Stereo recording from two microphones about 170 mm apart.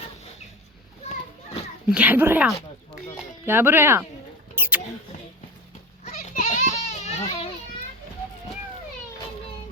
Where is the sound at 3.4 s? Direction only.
15° right (ahead or behind).